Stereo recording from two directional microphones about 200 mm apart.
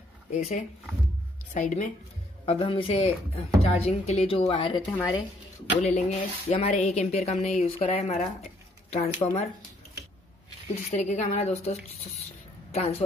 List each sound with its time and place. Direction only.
0.3 s speech: 35° left (ahead or behind)
5.8 s speech: 30° left (ahead or behind)
10.7 s speech: 35° left (ahead or behind)